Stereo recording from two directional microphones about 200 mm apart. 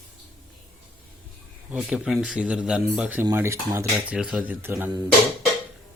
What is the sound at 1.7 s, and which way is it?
Speech, centre (ahead or behind).